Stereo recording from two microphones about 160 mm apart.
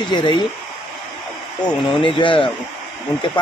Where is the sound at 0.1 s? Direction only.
30° left (ahead or behind).